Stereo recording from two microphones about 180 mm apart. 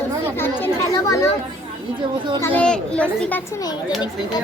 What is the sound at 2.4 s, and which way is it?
A child's voice, 10° left (ahead or behind).